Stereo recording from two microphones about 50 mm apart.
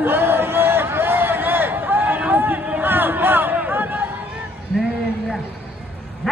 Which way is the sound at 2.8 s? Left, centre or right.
Right.